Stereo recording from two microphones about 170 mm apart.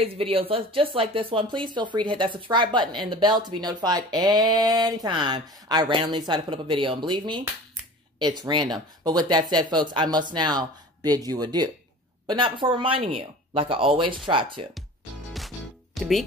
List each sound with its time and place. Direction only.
0.0 s speech: 35° right (ahead or behind)
15.3 s music: centre (ahead or behind)